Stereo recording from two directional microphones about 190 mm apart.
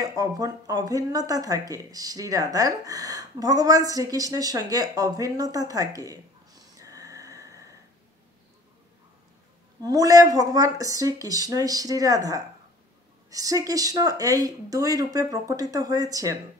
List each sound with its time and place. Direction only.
0.0 s speech: 20° right (ahead or behind)
9.8 s speech: 20° right (ahead or behind)